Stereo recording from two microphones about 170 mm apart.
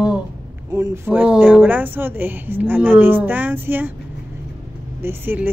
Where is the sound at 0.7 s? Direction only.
20° right (ahead or behind).